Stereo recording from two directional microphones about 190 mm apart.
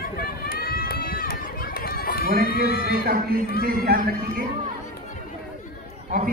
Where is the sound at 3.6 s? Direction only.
50° right (ahead or behind).